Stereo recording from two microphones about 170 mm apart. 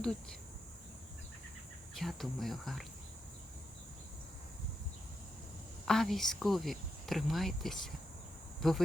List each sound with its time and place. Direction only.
0.0 s speech: 5° left (ahead or behind)
2.0 s speech: centre (ahead or behind)
5.9 s speech: centre (ahead or behind)